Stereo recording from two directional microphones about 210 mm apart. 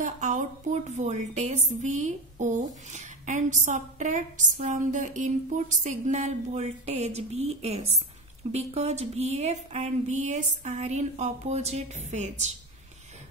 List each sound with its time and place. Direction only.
0.0 s speech: 35° right (ahead or behind)